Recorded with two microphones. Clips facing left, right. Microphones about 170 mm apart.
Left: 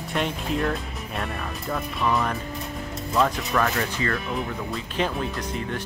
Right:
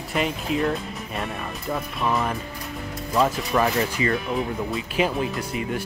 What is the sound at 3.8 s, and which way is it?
Speech, 15° right (ahead or behind).